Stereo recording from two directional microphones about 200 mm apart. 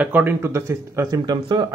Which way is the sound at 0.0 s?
10° right (ahead or behind).